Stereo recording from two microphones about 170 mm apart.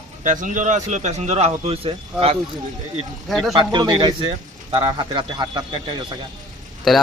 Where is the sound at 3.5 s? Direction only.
25° right (ahead or behind).